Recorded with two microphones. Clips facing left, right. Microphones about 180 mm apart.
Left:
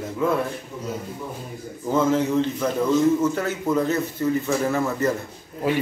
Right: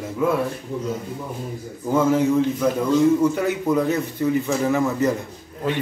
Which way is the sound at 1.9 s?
10° right (ahead or behind).